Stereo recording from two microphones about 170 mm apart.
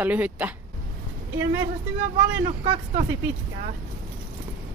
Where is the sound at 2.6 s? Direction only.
35° right (ahead or behind).